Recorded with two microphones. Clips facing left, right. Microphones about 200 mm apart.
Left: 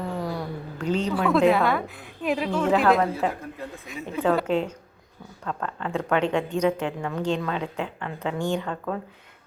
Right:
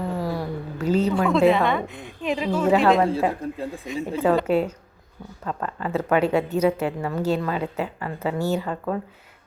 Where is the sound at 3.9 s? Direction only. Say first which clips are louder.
Right 5 dB; 35° right (ahead or behind).